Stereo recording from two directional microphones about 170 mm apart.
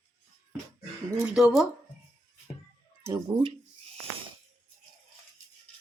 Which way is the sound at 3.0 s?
15° right (ahead or behind).